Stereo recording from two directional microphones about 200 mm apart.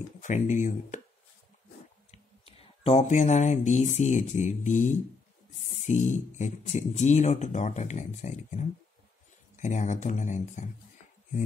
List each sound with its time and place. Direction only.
0.2 s speech: 35° left (ahead or behind)
2.0 s speech: 30° left (ahead or behind)